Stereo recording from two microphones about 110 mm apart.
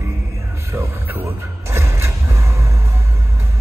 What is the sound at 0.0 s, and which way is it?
Music, 25° right (ahead or behind).